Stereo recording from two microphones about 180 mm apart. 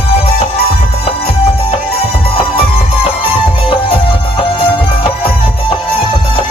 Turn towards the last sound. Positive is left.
turn(degrees=30)  # may be behind; listen again after turning